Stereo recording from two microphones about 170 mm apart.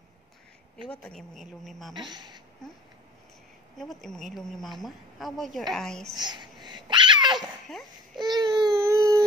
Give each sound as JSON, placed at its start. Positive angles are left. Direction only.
{"t": 1.0, "sound": "a woman's voice", "side_deg": 0}
{"t": 2.0, "sound": "speech", "side_deg": -25}
{"t": 3.7, "sound": "a woman's voice", "side_deg": 0}
{"t": 6.1, "sound": "a sound", "side_deg": -25}
{"t": 7.3, "sound": "dog", "side_deg": 0}
{"t": 8.2, "sound": "baby cry", "side_deg": -25}